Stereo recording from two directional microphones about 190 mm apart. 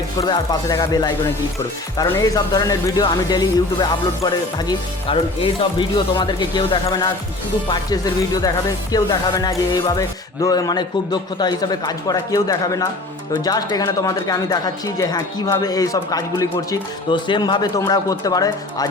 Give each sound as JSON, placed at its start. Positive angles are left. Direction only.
{"t": 0.2, "sound": "speech", "side_deg": 20}